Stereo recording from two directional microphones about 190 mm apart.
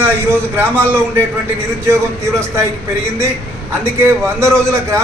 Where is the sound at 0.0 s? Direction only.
10° right (ahead or behind).